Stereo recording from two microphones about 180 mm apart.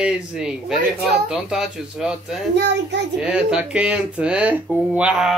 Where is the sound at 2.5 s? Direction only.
70° right (ahead or behind).